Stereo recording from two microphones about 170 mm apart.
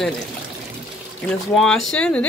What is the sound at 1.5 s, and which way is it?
Speech, centre (ahead or behind).